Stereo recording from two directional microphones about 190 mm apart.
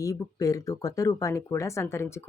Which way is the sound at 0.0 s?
15° left (ahead or behind).